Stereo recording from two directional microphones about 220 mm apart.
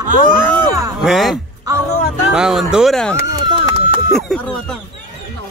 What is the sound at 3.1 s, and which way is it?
Chop, 20° right (ahead or behind).